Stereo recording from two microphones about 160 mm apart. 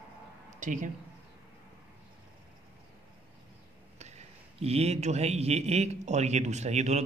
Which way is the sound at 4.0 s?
40° right (ahead or behind).